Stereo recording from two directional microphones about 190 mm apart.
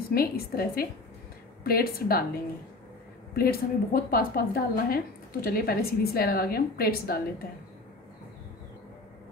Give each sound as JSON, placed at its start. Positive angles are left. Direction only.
{"t": 0.1, "sound": "a woman's voice", "side_deg": 50}
{"t": 3.3, "sound": "a woman's voice", "side_deg": 55}